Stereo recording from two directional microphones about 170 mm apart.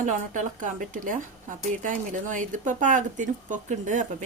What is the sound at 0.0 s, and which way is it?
A woman's voice, 45° right (ahead or behind).